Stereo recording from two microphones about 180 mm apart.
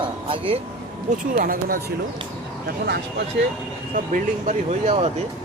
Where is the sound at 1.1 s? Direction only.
50° right (ahead or behind).